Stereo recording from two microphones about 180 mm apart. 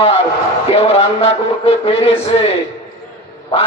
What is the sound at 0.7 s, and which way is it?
Speech, 35° left (ahead or behind).